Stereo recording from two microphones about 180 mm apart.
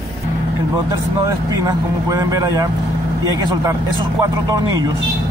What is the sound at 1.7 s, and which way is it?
A man's voice, 20° right (ahead or behind).